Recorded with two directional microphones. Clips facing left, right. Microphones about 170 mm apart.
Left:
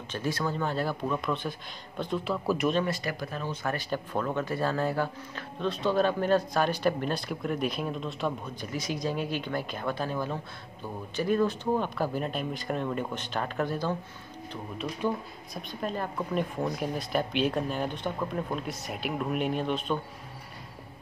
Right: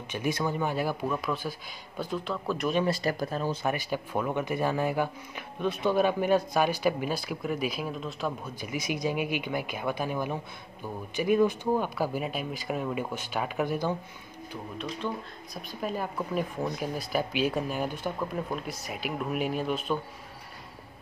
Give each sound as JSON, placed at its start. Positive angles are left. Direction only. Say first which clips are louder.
{"t": 0.1, "sound": "speech", "louder": "right 1 dB", "side_deg": -15}
{"t": 2.8, "sound": "speech", "louder": "right 3 dB", "side_deg": -35}
{"t": 3.6, "sound": "speech", "louder": "right 1 dB", "side_deg": -10}
{"t": 15.0, "sound": "speech", "louder": "left 4 dB", "side_deg": 10}
{"t": 15.5, "sound": "speech", "louder": "even", "side_deg": -5}